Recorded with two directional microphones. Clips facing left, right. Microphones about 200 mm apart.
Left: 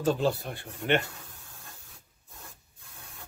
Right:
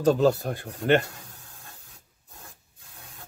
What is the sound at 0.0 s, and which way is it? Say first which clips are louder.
Speech: right 6 dB; 40° right (ahead or behind).